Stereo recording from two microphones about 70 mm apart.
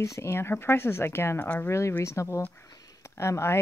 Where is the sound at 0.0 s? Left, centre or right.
Left.